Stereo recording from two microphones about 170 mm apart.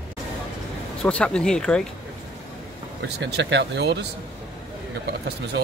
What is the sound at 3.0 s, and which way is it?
Speech, 85° right.